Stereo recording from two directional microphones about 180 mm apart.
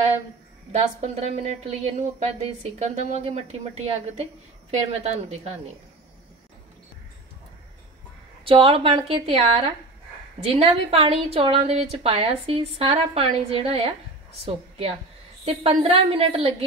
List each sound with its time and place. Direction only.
0.7 s a woman's voice: 35° right (ahead or behind)
8.5 s a woman's voice: 30° right (ahead or behind)